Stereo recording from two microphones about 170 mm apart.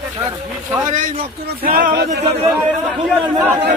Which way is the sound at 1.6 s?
55° right (ahead or behind).